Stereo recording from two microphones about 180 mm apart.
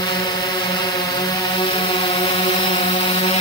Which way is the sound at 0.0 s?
20° left (ahead or behind).